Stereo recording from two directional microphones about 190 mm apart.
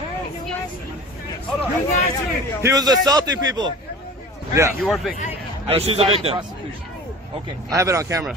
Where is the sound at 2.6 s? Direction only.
15° right (ahead or behind).